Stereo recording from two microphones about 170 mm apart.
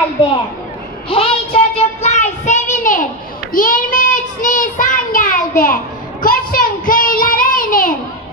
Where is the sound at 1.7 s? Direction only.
40° left (ahead or behind).